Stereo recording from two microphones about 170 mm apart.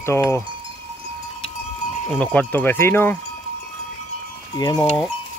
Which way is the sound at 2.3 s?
10° left (ahead or behind).